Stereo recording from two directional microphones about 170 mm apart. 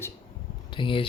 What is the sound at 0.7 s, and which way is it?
Speech, 30° left (ahead or behind).